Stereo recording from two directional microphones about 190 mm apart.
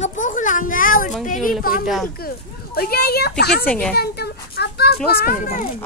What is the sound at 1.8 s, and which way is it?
Speech, centre (ahead or behind).